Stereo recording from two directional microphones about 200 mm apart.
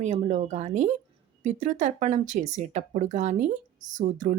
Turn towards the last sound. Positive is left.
turn(degrees=-40)  # may be behind; listen again after turning